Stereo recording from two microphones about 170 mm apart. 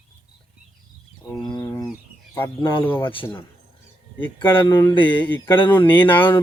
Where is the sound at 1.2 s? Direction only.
20° left (ahead or behind).